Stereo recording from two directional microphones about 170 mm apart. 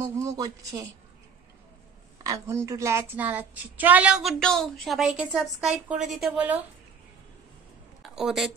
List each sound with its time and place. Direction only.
0.0 s speech: 15° right (ahead or behind)
2.2 s a woman's voice: 15° right (ahead or behind)
8.0 s a sound: centre (ahead or behind)